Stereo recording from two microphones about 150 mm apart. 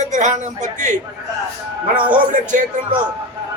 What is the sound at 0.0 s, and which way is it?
Speech, 55° right (ahead or behind).